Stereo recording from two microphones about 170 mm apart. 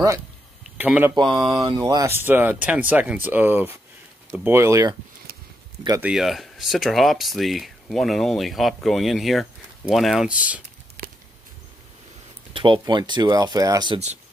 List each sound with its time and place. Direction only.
0.7 s speech: 10° right (ahead or behind)
1.1 s speech: 25° right (ahead or behind)
6.0 s speech: centre (ahead or behind)
12.5 s speech: 30° right (ahead or behind)